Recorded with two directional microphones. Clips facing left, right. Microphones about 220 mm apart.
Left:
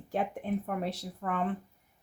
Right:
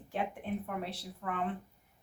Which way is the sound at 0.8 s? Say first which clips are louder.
Left 5 dB; 45° left (ahead or behind).